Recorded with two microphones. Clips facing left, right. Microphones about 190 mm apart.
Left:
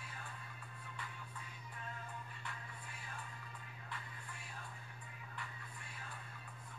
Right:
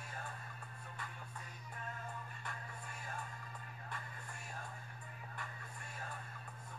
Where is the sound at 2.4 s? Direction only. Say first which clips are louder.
Right 2 dB; 45° right (ahead or behind).